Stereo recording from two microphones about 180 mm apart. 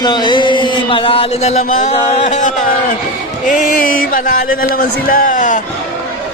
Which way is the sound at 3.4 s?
45° left (ahead or behind).